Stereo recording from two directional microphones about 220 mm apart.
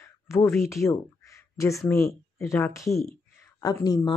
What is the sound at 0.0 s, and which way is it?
A woman's voice, 10° left (ahead or behind).